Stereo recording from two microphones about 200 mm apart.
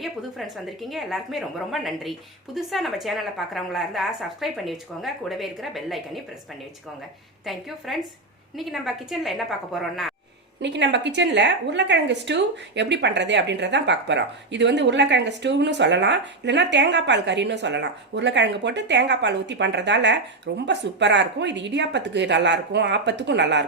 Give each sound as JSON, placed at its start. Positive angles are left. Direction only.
{"t": 0.0, "sound": "a woman's voice", "side_deg": 0}
{"t": 7.5, "sound": "a woman's voice", "side_deg": 0}
{"t": 10.6, "sound": "a woman's voice", "side_deg": -60}